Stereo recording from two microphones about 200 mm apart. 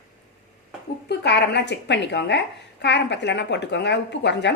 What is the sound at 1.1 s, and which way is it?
A woman's voice, 55° left (ahead or behind).